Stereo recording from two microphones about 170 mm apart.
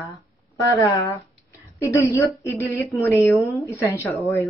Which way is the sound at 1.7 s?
15° left (ahead or behind).